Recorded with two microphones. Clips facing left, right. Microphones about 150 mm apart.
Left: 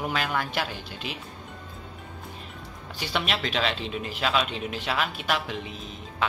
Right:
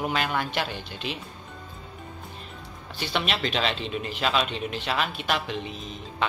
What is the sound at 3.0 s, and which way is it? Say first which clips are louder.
A man's voice: right 1 dB; 5° left (ahead or behind).